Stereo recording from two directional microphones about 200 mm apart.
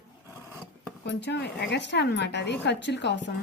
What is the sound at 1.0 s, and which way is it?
A woman's voice, 60° left (ahead or behind).